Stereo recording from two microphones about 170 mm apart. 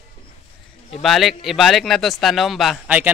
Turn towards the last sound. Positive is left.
turn(degrees=-5)  # may be behind; listen again after turning